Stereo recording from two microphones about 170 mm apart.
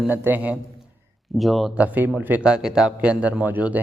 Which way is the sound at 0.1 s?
10° right (ahead or behind).